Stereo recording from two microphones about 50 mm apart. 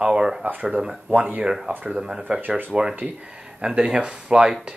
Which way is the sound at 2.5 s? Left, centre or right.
Centre.